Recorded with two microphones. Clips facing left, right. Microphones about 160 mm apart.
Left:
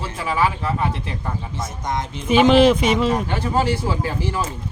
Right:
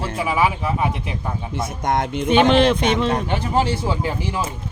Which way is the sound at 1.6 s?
60° right (ahead or behind).